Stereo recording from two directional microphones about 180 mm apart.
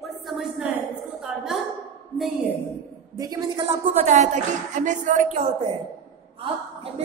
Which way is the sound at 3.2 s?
20° right (ahead or behind).